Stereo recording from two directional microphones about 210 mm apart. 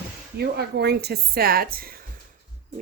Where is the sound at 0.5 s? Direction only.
50° right (ahead or behind).